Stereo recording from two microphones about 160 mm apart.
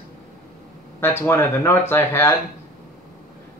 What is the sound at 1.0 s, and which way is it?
Speech, 15° left (ahead or behind).